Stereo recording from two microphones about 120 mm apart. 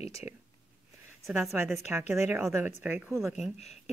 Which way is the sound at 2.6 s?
15° right (ahead or behind).